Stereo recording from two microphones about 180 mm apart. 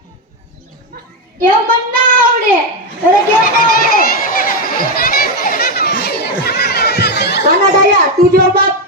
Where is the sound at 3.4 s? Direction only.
50° left (ahead or behind).